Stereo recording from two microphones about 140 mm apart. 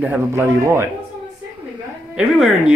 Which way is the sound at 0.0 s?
15° right (ahead or behind).